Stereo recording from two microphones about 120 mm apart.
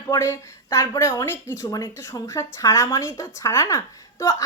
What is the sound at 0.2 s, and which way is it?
A woman's voice, 20° left (ahead or behind).